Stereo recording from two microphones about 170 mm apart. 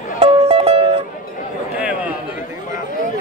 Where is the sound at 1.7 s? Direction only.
5° right (ahead or behind).